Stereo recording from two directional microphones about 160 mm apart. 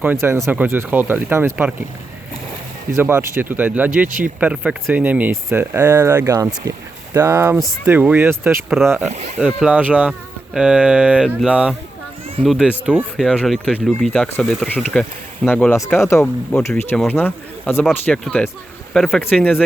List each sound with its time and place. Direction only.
0.0 s speech: 15° right (ahead or behind)
2.9 s speech: 15° right (ahead or behind)
9.0 s speech: 45° right (ahead or behind)
9.4 s speech: 5° right (ahead or behind)